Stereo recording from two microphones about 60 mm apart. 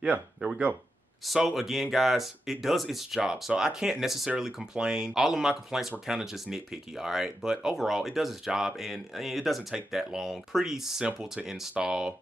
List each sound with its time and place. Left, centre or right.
0.4 s speech: right
1.2 s speech: centre